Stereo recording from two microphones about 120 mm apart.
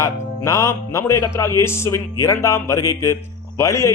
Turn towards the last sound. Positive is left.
turn(degrees=25)  # may be behind; listen again after turning